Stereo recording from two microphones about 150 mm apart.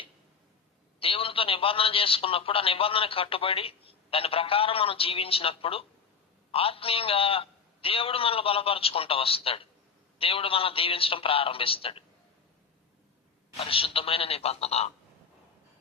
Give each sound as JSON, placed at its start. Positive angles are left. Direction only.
{"t": 0.9, "sound": "a man's voice", "side_deg": 40}
{"t": 13.6, "sound": "a man's voice", "side_deg": 40}